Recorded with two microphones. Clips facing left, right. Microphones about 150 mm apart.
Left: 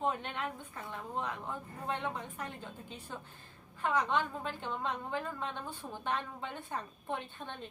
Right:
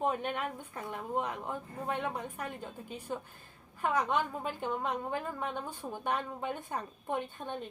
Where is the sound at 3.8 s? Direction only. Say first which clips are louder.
Right 1 dB; 10° right (ahead or behind).